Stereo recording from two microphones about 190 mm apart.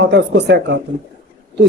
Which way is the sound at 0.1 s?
65° right (ahead or behind).